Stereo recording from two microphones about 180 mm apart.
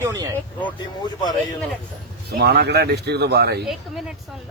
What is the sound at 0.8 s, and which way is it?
Speech, 20° left (ahead or behind).